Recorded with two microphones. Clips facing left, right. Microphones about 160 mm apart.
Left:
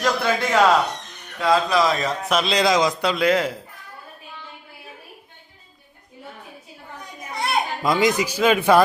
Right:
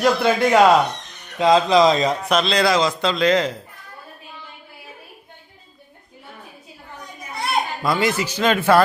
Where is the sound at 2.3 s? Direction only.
10° left (ahead or behind).